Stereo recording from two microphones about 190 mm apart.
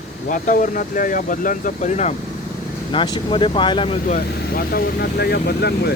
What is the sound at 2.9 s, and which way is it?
Speech, 25° left (ahead or behind).